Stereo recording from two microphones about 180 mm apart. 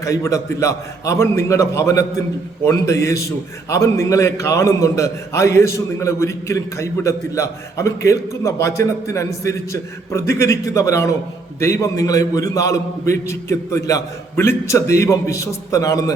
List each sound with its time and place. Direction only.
0.0 s a man's voice: 15° left (ahead or behind)